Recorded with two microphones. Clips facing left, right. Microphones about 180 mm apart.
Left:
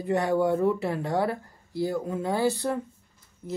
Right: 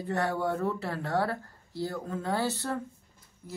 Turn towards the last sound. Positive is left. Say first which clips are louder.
# left 7 dB
turn(degrees=20)  # may be behind; listen again after turning